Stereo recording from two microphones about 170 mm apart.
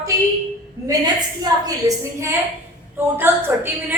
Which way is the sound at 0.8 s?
20° right (ahead or behind).